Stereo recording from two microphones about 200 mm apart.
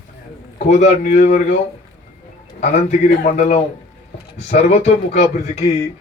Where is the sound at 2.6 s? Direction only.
40° left (ahead or behind).